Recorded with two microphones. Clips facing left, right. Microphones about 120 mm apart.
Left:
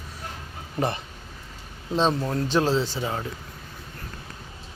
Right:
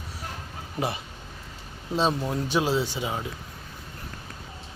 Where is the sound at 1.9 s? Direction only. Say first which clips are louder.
Left 2 dB; 10° right (ahead or behind).